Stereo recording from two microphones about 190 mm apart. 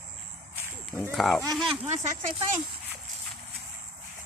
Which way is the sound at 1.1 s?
Centre (ahead or behind).